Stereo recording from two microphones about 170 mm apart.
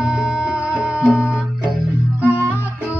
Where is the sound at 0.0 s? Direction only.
5° right (ahead or behind).